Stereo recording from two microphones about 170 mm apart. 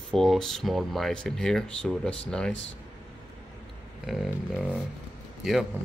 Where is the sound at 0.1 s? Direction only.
Centre (ahead or behind).